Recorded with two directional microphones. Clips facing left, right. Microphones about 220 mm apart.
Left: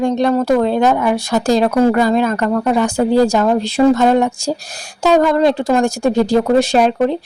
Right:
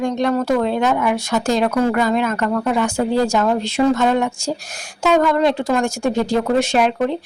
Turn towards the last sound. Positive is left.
turn(degrees=35)  # may be behind; listen again after turning